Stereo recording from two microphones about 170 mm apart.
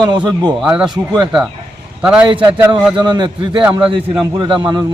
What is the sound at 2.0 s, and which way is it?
Speech, 5° right (ahead or behind).